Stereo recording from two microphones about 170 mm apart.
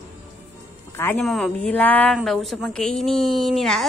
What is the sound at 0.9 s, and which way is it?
Music, 15° left (ahead or behind).